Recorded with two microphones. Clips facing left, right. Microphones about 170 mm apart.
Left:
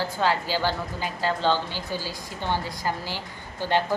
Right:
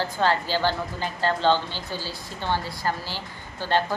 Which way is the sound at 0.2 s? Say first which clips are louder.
Right 2 dB; 10° left (ahead or behind).